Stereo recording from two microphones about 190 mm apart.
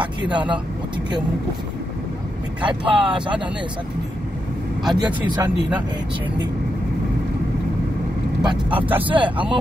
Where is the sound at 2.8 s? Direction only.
5° right (ahead or behind).